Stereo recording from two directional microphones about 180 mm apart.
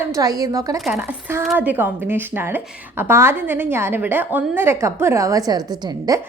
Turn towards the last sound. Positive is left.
turn(degrees=-20)  # may be behind; listen again after turning